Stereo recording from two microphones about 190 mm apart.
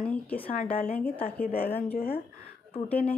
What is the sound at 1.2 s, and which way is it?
Speech, 50° left (ahead or behind).